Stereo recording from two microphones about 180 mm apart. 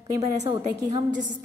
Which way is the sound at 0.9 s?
45° right (ahead or behind).